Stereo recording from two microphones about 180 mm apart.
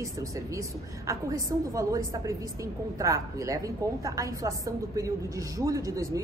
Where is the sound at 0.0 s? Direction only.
20° right (ahead or behind).